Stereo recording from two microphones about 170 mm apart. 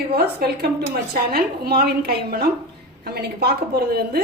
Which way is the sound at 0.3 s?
65° right (ahead or behind).